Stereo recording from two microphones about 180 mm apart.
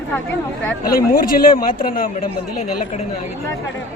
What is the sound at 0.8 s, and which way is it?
Speech, 50° left (ahead or behind).